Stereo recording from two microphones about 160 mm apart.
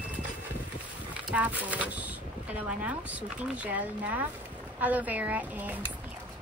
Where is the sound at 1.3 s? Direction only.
10° right (ahead or behind).